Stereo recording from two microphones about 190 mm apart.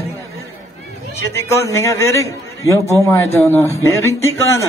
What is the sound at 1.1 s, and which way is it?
A man's voice, 15° left (ahead or behind).